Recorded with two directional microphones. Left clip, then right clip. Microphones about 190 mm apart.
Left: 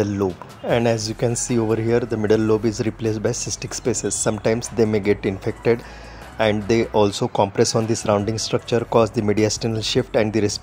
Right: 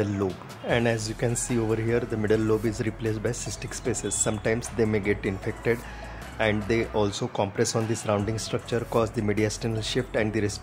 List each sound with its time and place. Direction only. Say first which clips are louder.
0.0 s speech: left 6 dB; 20° left (ahead or behind)